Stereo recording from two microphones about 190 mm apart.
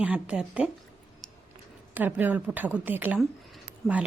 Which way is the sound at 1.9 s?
10° right (ahead or behind).